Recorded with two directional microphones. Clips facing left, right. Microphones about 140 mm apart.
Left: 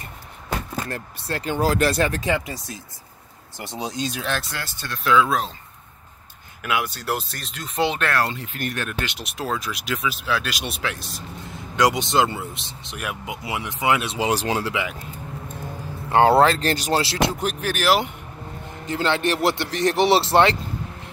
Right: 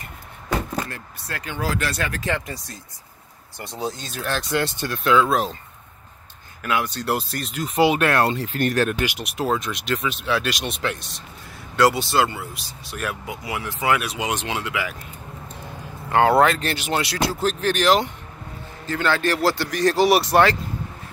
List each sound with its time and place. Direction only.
0.8 s speech: 35° left (ahead or behind)
2.2 s speech: 15° left (ahead or behind)
3.5 s speech: 20° left (ahead or behind)
4.0 s speech: centre (ahead or behind)
4.5 s speech: 20° right (ahead or behind)
4.8 s speech: centre (ahead or behind)
6.6 s speech: 10° left (ahead or behind); by 8.1 s 10° right (ahead or behind)
8.1 s speech: 25° right (ahead or behind)
8.4 s speech: 35° right (ahead or behind)
8.9 s speech: 10° right (ahead or behind)
11.7 s speech: 15° left (ahead or behind); by 14.8 s 35° left (ahead or behind)
16.1 s speech: 25° left (ahead or behind)
17.5 s speech: 10° left (ahead or behind)
18.9 s speech: 25° left (ahead or behind)